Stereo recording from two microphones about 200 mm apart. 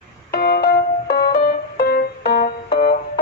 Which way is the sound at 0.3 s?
50° left (ahead or behind).